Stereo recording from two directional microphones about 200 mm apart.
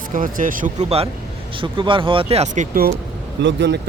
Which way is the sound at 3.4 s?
60° right (ahead or behind).